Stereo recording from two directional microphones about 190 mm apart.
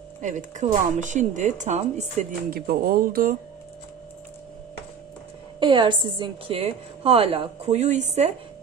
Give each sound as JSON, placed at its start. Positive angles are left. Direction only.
{"t": 0.2, "sound": "speech", "side_deg": -40}
{"t": 2.5, "sound": "speech", "side_deg": -55}
{"t": 5.6, "sound": "a woman's voice", "side_deg": -25}